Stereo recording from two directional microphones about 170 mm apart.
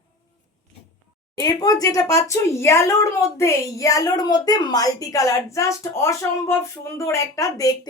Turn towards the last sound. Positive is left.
turn(degrees=20)  # may be behind; listen again after turning